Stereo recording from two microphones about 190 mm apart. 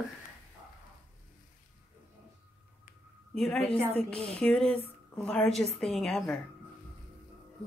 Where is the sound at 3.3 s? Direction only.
Centre (ahead or behind).